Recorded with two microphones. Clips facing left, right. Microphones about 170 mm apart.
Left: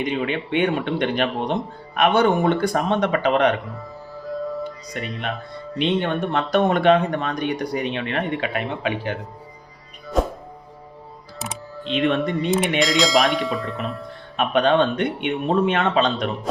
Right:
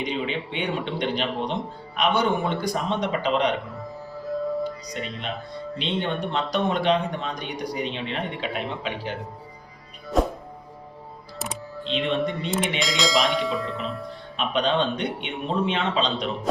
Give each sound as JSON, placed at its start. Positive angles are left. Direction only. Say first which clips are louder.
{"t": 0.0, "sound": "speech", "louder": "left 4 dB", "side_deg": 55}
{"t": 4.9, "sound": "speech", "louder": "left 7 dB", "side_deg": 60}
{"t": 10.2, "sound": "music", "louder": "left 1 dB", "side_deg": 0}
{"t": 11.9, "sound": "speech", "louder": "left 4 dB", "side_deg": 55}
{"t": 12.8, "sound": "speech", "louder": "left 5 dB", "side_deg": 0}
{"t": 14.3, "sound": "speech", "louder": "left 6 dB", "side_deg": 55}